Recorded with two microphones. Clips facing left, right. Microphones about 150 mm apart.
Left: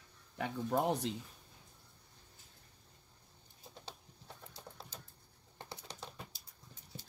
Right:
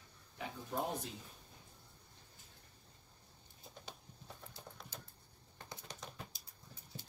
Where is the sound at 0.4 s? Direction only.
65° left (ahead or behind).